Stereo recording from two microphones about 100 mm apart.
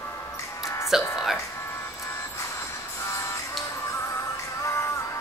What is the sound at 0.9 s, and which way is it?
Speech, 5° right (ahead or behind).